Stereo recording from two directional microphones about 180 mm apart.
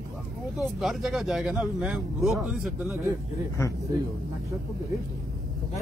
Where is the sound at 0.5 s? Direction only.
Centre (ahead or behind).